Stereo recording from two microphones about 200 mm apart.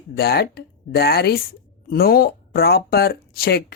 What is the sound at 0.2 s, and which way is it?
Speech, 50° left (ahead or behind).